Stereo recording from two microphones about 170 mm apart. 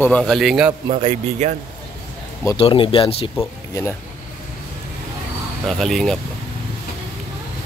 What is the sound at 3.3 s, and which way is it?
Speech, 15° left (ahead or behind).